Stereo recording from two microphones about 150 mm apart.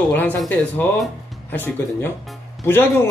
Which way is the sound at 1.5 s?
15° left (ahead or behind).